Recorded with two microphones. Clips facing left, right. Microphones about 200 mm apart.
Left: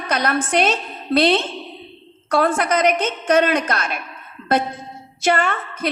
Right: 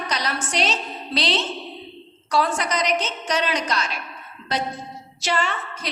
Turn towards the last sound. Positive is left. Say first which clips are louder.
# left 4 dB
turn(degrees=55)  # may be behind; listen again after turning